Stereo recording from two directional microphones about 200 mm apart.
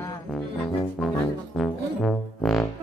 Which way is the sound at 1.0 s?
Centre (ahead or behind).